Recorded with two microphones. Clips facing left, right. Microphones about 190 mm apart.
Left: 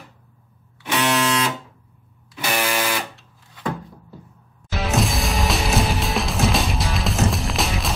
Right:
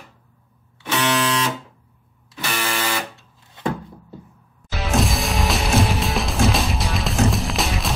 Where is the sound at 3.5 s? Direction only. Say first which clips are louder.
Right 2 dB; 25° right (ahead or behind).